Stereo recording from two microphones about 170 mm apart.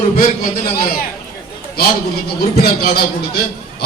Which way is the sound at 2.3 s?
65° left (ahead or behind).